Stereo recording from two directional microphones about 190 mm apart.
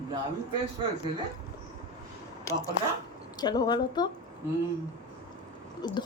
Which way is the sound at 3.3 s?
20° left (ahead or behind).